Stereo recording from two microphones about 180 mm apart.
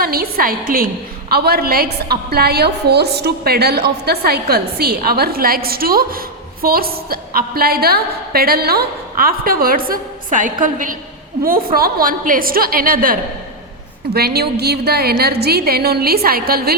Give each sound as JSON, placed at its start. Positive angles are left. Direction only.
{"t": 0.0, "sound": "a woman's voice", "side_deg": -55}